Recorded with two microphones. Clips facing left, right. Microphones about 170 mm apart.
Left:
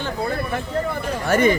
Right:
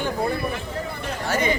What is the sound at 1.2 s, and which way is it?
Speech, 55° left (ahead or behind).